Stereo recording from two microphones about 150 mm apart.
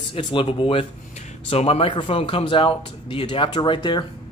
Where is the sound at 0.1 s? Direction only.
35° left (ahead or behind).